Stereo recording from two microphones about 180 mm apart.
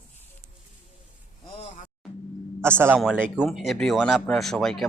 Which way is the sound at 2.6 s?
10° right (ahead or behind).